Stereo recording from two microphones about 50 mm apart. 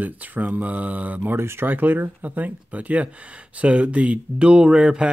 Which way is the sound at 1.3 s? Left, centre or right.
Right.